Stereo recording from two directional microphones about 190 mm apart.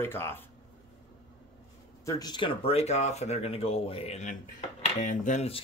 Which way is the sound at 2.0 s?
20° left (ahead or behind).